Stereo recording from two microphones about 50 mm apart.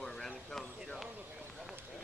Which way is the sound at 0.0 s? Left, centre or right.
Centre.